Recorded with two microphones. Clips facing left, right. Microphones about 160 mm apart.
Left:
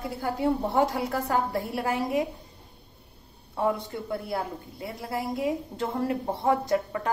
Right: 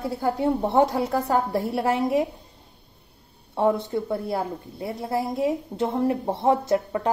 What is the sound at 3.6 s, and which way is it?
A woman's voice, 25° right (ahead or behind).